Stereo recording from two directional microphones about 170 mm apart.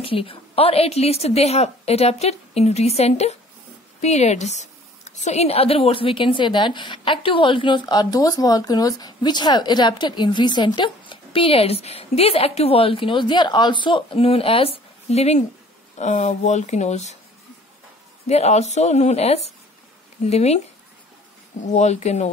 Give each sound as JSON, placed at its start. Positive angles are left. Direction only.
{"t": 0.0, "sound": "a woman's voice", "side_deg": 30}
{"t": 18.2, "sound": "a woman's voice", "side_deg": 40}
{"t": 21.7, "sound": "a woman's voice", "side_deg": 40}